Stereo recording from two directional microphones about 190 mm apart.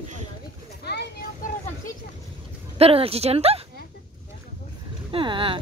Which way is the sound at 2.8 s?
30° right (ahead or behind).